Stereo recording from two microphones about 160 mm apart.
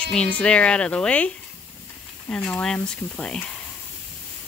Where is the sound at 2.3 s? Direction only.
5° left (ahead or behind).